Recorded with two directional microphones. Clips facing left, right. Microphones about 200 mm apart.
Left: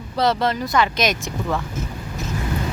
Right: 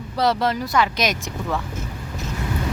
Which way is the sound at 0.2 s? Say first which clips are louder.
Left 1 dB; 10° right (ahead or behind).